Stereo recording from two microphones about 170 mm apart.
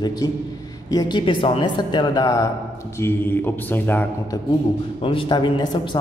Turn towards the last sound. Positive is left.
turn(degrees=25)  # may be behind; listen again after turning